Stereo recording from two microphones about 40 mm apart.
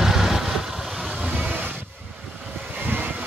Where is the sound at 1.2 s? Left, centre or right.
Right.